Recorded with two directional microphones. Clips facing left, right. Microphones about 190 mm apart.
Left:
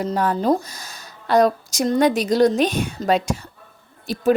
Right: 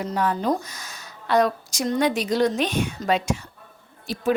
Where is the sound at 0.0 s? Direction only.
40° left (ahead or behind).